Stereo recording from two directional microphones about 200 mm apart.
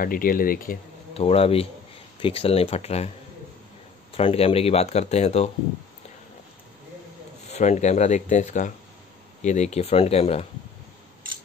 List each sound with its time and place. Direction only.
0.0 s speech: 45° left (ahead or behind)
1.1 s speech: 30° left (ahead or behind)
4.1 s speech: 30° left (ahead or behind)
7.4 s speech: 35° left (ahead or behind)